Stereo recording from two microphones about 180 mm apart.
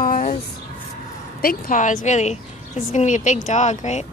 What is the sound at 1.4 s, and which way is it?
A woman's voice, 50° left (ahead or behind).